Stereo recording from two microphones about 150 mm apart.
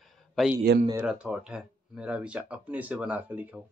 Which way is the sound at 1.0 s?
5° right (ahead or behind).